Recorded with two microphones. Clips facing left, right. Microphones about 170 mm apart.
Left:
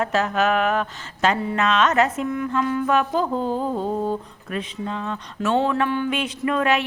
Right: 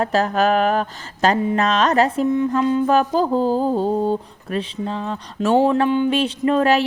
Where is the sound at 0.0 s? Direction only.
35° right (ahead or behind).